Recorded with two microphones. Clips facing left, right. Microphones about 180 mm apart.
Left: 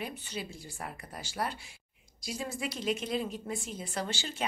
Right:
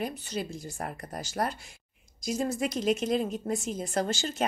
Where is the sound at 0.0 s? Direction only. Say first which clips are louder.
Right 6 dB; 40° right (ahead or behind).